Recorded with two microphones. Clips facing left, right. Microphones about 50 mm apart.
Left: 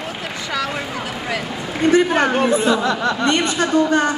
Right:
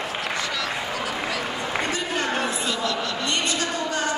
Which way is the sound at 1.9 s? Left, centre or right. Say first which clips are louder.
Left 10 dB; left.